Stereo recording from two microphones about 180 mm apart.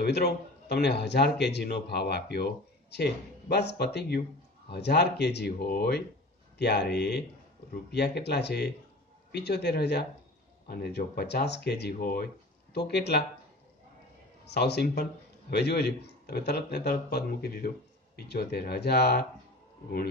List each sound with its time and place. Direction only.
0.0 s speech: 65° left (ahead or behind)
14.4 s speech: 65° left (ahead or behind)